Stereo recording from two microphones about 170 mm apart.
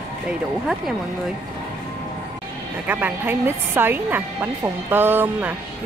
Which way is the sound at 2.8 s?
10° right (ahead or behind).